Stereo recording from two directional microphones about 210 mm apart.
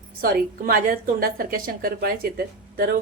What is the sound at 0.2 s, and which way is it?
Speech, 45° right (ahead or behind).